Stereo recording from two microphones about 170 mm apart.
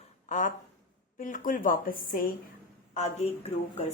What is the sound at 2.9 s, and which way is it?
Speech, 40° left (ahead or behind).